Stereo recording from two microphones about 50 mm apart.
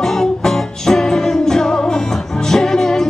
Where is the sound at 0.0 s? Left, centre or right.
Centre.